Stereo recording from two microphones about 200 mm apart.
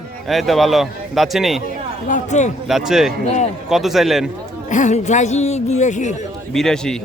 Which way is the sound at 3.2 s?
35° left (ahead or behind).